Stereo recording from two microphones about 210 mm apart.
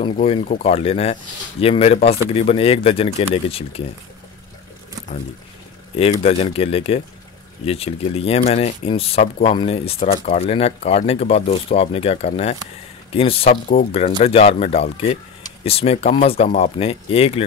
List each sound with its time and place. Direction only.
0.1 s speech: 30° left (ahead or behind)
6.2 s speech: 30° left (ahead or behind)